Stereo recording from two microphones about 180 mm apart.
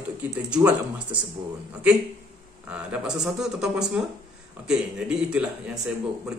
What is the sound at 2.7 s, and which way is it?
A man's voice, 5° right (ahead or behind).